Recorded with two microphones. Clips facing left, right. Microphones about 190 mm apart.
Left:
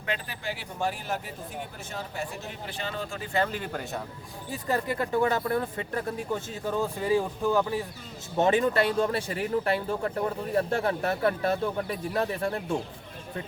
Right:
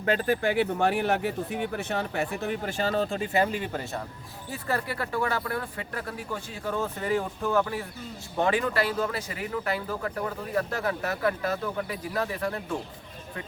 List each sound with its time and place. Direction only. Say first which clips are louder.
0.0 s speech: right 9 dB; 45° right (ahead or behind)
3.2 s speech: right 3 dB; 15° right (ahead or behind)
3.5 s speech: right 2 dB; 5° right (ahead or behind)
4.5 s speech: left 2 dB; 15° left (ahead or behind)